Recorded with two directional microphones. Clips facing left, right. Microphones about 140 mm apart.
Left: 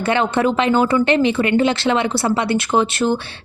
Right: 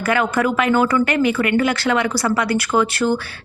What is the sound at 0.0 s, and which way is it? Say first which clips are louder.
Speech: left 1 dB; 25° left (ahead or behind).